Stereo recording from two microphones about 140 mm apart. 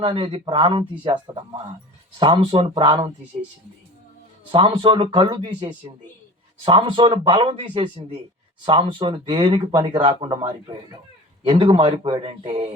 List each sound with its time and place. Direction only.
0.0 s speech: 40° right (ahead or behind)
4.5 s speech: 40° right (ahead or behind)
11.5 s speech: 40° right (ahead or behind)